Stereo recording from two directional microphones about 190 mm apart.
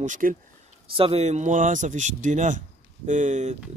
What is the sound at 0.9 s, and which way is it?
Speech, 30° right (ahead or behind).